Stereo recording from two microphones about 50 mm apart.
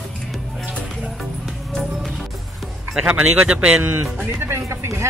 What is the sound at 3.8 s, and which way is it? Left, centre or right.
Speech, right.